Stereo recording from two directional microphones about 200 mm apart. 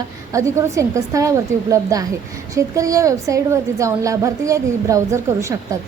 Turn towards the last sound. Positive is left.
turn(degrees=-15)  # may be behind; listen again after turning